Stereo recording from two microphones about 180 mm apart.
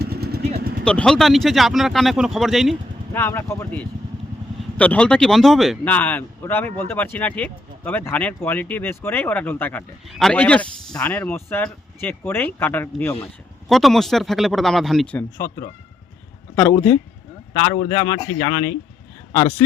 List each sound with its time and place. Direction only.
0.0 s vehicle: 60° right (ahead or behind)
0.9 s speech: 5° left (ahead or behind)
3.2 s a man's voice: 15° left (ahead or behind)
13.7 s speech: centre (ahead or behind)
16.6 s a man's voice: 10° left (ahead or behind)
17.8 s speech: 20° left (ahead or behind)